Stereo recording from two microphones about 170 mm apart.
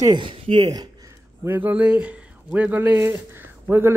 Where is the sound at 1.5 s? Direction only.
10° right (ahead or behind).